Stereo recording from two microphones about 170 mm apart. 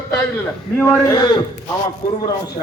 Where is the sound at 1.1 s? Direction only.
25° left (ahead or behind).